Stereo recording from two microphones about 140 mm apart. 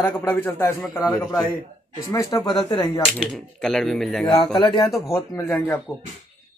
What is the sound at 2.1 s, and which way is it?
Speech, 25° left (ahead or behind).